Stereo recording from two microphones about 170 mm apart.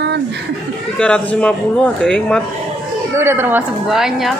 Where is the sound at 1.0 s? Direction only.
5° left (ahead or behind).